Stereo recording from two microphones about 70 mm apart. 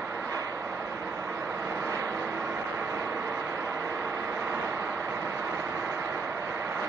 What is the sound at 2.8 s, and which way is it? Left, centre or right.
Vehicle, right.